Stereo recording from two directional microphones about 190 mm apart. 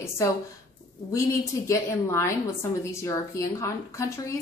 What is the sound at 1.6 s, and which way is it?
A woman's voice, 15° left (ahead or behind).